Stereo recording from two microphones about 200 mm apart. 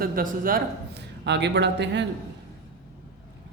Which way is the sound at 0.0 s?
45° right (ahead or behind).